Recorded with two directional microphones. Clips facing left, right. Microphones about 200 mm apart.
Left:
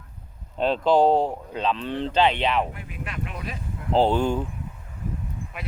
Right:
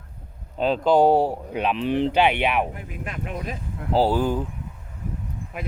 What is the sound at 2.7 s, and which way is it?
Speech, 40° right (ahead or behind).